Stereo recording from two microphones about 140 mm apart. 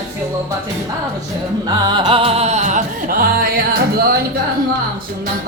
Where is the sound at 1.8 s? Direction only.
35° right (ahead or behind); by 4.1 s 90° right.